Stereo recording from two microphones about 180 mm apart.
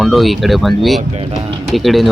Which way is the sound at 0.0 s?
Centre (ahead or behind).